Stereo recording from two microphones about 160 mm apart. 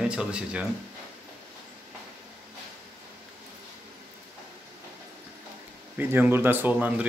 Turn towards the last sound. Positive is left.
turn(degrees=-10)  # may be behind; listen again after turning